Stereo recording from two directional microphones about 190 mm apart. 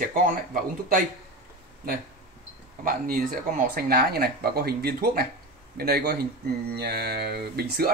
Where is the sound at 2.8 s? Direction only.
50° right (ahead or behind).